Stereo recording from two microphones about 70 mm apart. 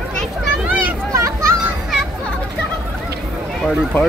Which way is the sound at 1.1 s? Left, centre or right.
Right.